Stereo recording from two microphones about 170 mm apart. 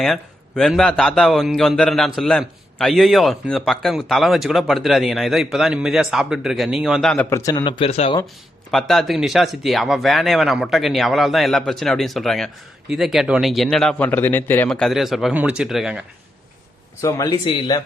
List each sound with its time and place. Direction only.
0.0 s speech: 5° left (ahead or behind)
7.3 s speech: 20° left (ahead or behind); by 8.2 s 35° left (ahead or behind)
8.7 s speech: centre (ahead or behind)
17.0 s speech: 20° left (ahead or behind)